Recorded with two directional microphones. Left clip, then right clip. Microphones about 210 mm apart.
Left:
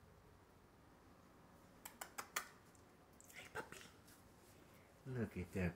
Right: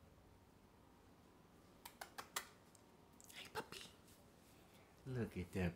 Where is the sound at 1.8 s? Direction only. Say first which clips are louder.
Left 1 dB; 5° right (ahead or behind).